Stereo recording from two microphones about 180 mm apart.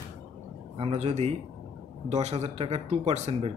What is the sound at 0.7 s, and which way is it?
Speech, 35° right (ahead or behind).